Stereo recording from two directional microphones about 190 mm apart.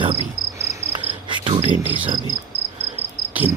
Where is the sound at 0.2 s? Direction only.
35° left (ahead or behind).